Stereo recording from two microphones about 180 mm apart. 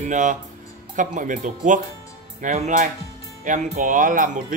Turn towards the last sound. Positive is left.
turn(degrees=-50)  # may be behind; listen again after turning